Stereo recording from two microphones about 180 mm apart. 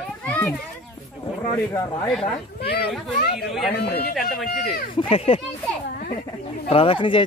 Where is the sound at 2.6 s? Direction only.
60° left (ahead or behind).